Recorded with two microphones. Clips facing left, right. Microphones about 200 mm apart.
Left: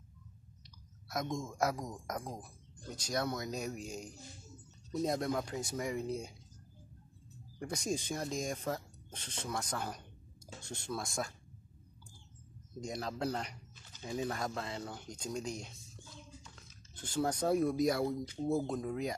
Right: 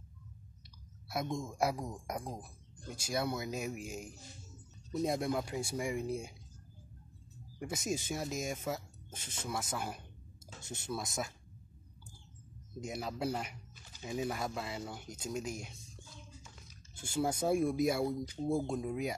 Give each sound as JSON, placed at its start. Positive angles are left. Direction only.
{"t": 1.0, "sound": "speech", "side_deg": -10}
{"t": 7.7, "sound": "speech", "side_deg": -5}
{"t": 10.6, "sound": "speech", "side_deg": -20}
{"t": 12.8, "sound": "speech", "side_deg": -5}